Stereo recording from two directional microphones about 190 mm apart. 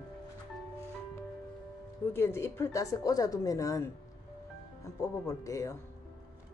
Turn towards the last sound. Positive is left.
turn(degrees=15)  # may be behind; listen again after turning